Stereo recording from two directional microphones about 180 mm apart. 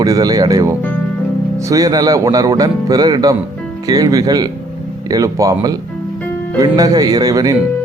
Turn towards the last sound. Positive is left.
turn(degrees=-20)  # may be behind; listen again after turning